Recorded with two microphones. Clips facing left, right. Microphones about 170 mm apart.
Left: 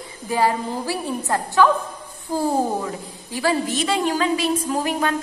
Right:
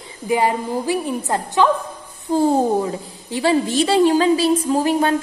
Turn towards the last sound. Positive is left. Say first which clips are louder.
# right 5 dB
turn(degrees=-30)  # may be behind; listen again after turning